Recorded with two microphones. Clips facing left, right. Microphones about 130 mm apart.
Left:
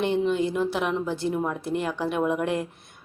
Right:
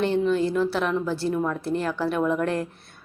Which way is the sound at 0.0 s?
20° left (ahead or behind).